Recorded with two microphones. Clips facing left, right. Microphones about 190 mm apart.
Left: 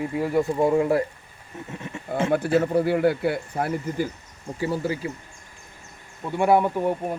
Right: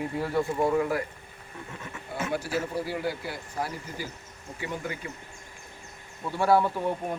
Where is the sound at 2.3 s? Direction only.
60° left (ahead or behind).